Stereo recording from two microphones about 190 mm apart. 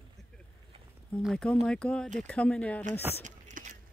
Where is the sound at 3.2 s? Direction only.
40° right (ahead or behind).